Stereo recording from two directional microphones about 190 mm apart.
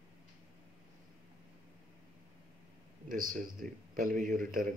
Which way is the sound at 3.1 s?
45° right (ahead or behind).